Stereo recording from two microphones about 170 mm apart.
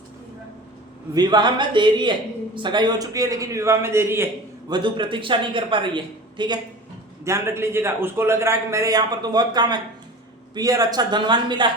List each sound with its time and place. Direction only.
1.1 s a woman's voice: 25° right (ahead or behind)
4.7 s a woman's voice: 30° right (ahead or behind)
7.3 s a man's voice: 15° right (ahead or behind)